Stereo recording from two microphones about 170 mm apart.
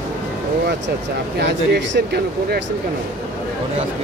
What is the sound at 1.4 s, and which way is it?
Speech, 90° right.